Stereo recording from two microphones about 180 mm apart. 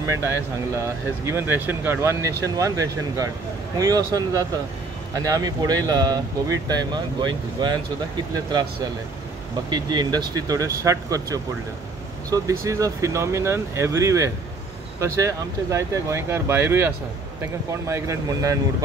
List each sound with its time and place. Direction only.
0.0 s speech: 15° right (ahead or behind)
9.7 s speech: 25° right (ahead or behind)